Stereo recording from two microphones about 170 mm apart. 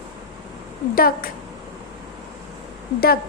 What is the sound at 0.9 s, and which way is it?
Speech, 60° left (ahead or behind).